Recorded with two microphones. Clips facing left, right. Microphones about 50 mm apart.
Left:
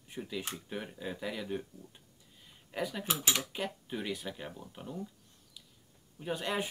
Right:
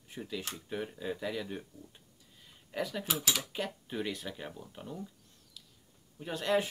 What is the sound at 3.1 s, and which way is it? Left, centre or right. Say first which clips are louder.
Speech: left 1 dB; left.